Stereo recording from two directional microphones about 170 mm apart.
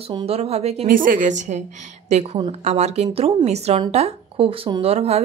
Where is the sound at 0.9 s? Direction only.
55° right (ahead or behind); by 5.2 s 35° right (ahead or behind).